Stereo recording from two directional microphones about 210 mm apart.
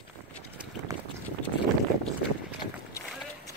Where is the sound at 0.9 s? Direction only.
15° right (ahead or behind).